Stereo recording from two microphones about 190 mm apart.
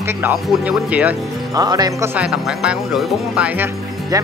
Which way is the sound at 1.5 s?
20° right (ahead or behind).